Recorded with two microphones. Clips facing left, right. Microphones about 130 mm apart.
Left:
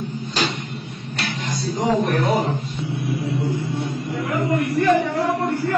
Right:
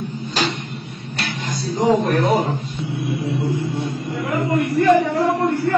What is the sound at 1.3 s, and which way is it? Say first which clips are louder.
Music: even; 25° right (ahead or behind).